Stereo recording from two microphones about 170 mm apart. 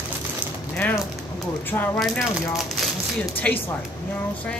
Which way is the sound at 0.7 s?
10° left (ahead or behind).